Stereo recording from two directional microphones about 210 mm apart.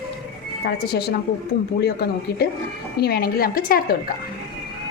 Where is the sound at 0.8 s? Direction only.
50° left (ahead or behind).